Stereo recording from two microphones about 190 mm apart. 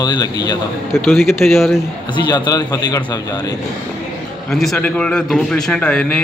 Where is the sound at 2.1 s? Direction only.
25° left (ahead or behind).